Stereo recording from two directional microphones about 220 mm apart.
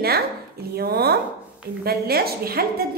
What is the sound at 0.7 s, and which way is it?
A woman's voice, 45° right (ahead or behind).